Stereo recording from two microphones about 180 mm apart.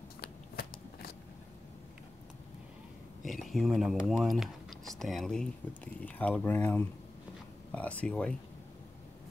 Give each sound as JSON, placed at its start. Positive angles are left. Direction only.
{"t": 0.2, "sound": "shuffling cards", "side_deg": 60}
{"t": 3.3, "sound": "speech", "side_deg": 0}